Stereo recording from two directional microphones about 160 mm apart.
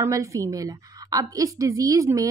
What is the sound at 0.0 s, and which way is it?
A woman's voice, 20° right (ahead or behind).